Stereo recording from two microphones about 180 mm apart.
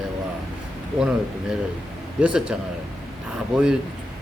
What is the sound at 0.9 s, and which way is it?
Speech, 5° right (ahead or behind).